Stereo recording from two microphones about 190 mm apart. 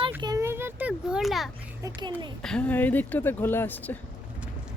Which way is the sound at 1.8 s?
25° right (ahead or behind).